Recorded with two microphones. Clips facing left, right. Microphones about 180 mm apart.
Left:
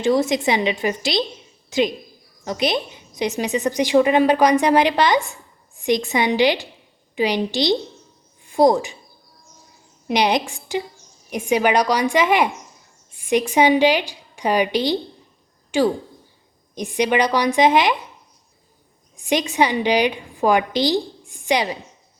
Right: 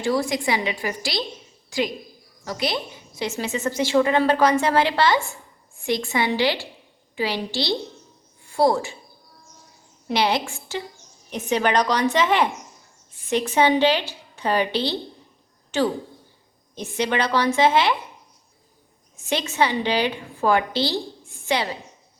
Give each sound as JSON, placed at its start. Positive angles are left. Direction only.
{"t": 0.0, "sound": "a woman's voice", "side_deg": 20}
{"t": 10.1, "sound": "a woman's voice", "side_deg": 15}
{"t": 19.1, "sound": "a woman's voice", "side_deg": 15}